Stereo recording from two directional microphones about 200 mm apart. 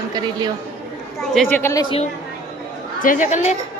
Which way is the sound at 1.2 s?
Centre (ahead or behind).